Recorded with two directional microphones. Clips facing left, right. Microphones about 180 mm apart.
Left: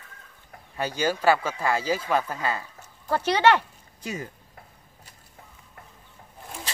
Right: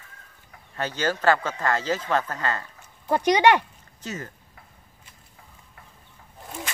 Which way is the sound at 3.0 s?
15° right (ahead or behind).